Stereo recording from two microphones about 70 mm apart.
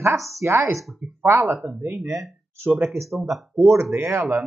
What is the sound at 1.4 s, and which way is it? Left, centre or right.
Speech, right.